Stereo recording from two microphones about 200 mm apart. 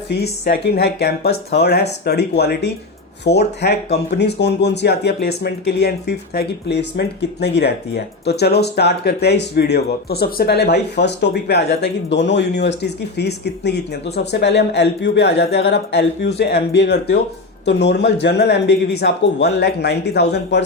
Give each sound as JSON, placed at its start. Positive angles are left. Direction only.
{"t": 0.1, "sound": "speech", "side_deg": 55}